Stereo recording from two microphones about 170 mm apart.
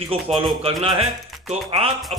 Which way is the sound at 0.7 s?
35° right (ahead or behind).